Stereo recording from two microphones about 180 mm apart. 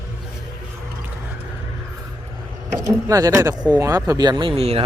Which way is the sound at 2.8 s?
20° right (ahead or behind).